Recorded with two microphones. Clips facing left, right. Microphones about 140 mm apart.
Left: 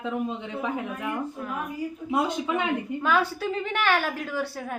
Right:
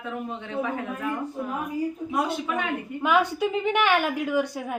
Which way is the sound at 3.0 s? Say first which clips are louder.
Right 4 dB; 15° right (ahead or behind).